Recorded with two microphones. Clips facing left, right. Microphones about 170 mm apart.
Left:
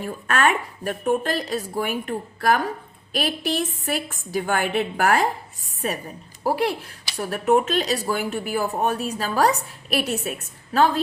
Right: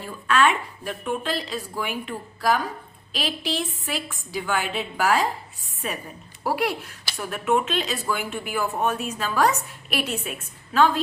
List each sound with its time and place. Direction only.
0.0 s a woman's voice: 50° left (ahead or behind)
5.8 s a woman's voice: 40° left (ahead or behind)
6.4 s speech: 30° left (ahead or behind)